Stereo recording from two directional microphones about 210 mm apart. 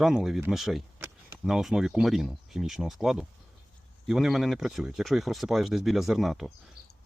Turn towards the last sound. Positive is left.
turn(degrees=0)  # may be behind; listen again after turning